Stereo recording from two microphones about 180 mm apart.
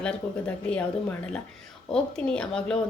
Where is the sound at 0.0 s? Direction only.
5° left (ahead or behind).